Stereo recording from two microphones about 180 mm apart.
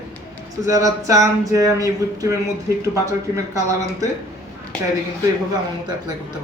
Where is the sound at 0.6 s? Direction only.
20° right (ahead or behind).